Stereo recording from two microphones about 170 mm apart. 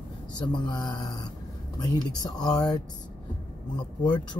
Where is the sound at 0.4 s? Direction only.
25° left (ahead or behind).